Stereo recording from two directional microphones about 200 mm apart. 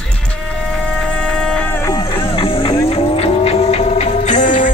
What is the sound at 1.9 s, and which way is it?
Music, 25° left (ahead or behind).